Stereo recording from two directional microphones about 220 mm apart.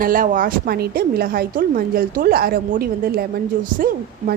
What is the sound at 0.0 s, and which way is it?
A woman's voice, 40° right (ahead or behind).